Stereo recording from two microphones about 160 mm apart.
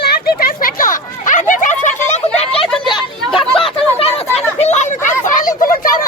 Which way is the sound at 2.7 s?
Centre (ahead or behind).